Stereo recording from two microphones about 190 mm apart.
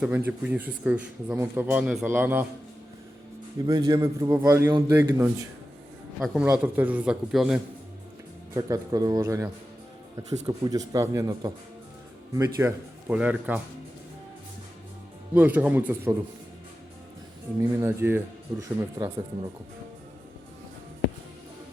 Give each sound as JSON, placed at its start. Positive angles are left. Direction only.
{"t": 0.0, "sound": "speech", "side_deg": -10}
{"t": 3.7, "sound": "speech", "side_deg": -20}
{"t": 6.1, "sound": "a man's voice", "side_deg": 0}
{"t": 8.5, "sound": "a man's voice", "side_deg": -20}
{"t": 15.4, "sound": "speech", "side_deg": -10}
{"t": 17.6, "sound": "speech", "side_deg": -15}